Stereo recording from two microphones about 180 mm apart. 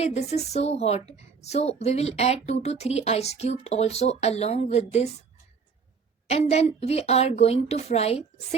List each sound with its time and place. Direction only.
0.0 s a woman's voice: 35° left (ahead or behind)
6.2 s a woman's voice: 35° left (ahead or behind)